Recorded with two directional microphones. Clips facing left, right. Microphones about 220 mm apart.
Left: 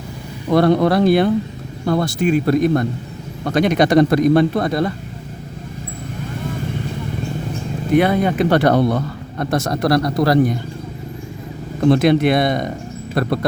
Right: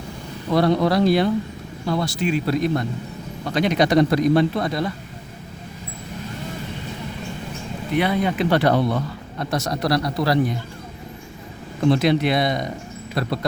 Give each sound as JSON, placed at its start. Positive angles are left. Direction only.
{"t": 0.5, "sound": "a man's voice", "side_deg": 50}
{"t": 7.9, "sound": "a man's voice", "side_deg": 50}
{"t": 11.9, "sound": "a man's voice", "side_deg": 55}